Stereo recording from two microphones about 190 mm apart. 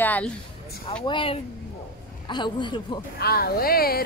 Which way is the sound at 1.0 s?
25° left (ahead or behind).